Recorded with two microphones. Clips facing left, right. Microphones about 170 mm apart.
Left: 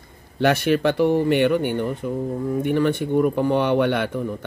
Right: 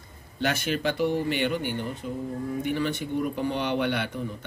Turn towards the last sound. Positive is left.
turn(degrees=50)  # may be behind; listen again after turning